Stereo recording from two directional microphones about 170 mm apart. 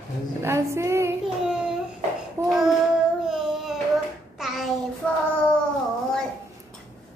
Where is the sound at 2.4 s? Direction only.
15° right (ahead or behind).